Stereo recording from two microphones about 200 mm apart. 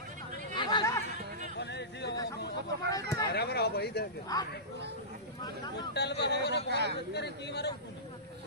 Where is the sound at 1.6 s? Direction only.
55° left (ahead or behind).